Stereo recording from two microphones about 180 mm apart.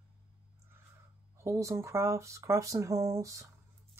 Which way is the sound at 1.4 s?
15° right (ahead or behind).